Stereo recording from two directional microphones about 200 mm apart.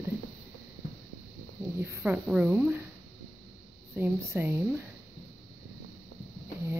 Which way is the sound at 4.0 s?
10° right (ahead or behind).